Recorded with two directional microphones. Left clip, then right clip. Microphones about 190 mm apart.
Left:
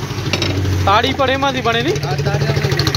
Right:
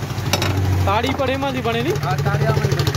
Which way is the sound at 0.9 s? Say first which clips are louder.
Left 6 dB; 10° right (ahead or behind).